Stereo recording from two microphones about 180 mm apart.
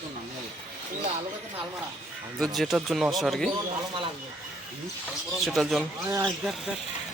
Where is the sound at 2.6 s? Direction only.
Centre (ahead or behind).